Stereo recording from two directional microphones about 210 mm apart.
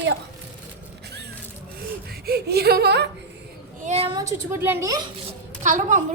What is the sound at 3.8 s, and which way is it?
A child's voice, 30° right (ahead or behind).